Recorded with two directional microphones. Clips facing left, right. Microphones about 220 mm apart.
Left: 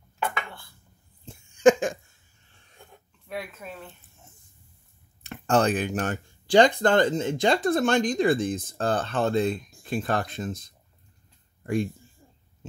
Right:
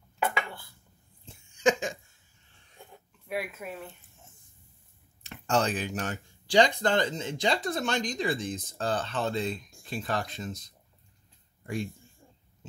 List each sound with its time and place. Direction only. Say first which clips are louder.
1.2 s a sound: left 8 dB; 50° left (ahead or behind)
3.3 s speech: right 1 dB; 10° right (ahead or behind)
5.2 s speech: left 5 dB; 55° left (ahead or behind)
11.6 s speech: left 7 dB; 55° left (ahead or behind)